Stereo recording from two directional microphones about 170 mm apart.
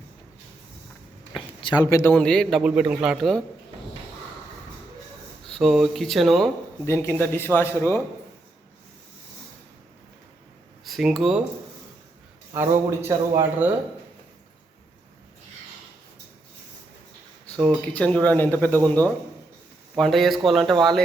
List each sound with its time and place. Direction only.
1.6 s speech: 25° left (ahead or behind)
2.1 s a man's voice: 5° left (ahead or behind)
5.5 s a man's voice: centre (ahead or behind)
6.8 s speech: 15° left (ahead or behind)
10.8 s speech: centre (ahead or behind)
12.5 s speech: 15° right (ahead or behind)
17.7 s speech: 10° left (ahead or behind)
20.0 s a man's voice: centre (ahead or behind)